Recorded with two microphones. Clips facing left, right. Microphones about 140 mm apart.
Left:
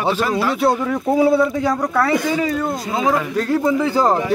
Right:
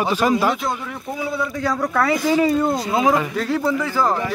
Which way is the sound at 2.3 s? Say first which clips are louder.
Right 3 dB; 15° right (ahead or behind).